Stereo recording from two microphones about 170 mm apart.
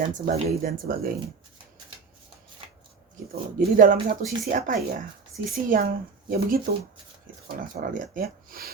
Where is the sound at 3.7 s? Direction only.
60° right (ahead or behind).